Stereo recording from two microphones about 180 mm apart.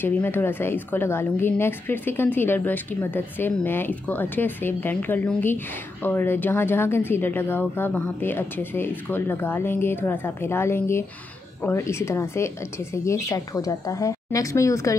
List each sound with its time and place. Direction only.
0.0 s a woman's voice: 10° left (ahead or behind)